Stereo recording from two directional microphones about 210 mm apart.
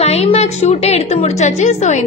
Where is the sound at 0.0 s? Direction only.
30° left (ahead or behind).